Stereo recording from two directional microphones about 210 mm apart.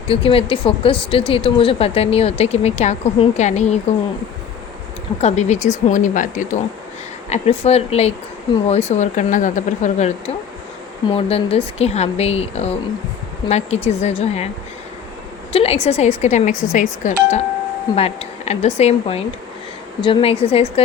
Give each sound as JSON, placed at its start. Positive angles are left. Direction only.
{"t": 0.1, "sound": "speech", "side_deg": 25}
{"t": 5.2, "sound": "speech", "side_deg": 30}
{"t": 15.5, "sound": "speech", "side_deg": 30}